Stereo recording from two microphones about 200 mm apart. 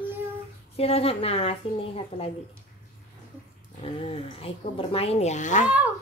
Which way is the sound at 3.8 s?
30° left (ahead or behind).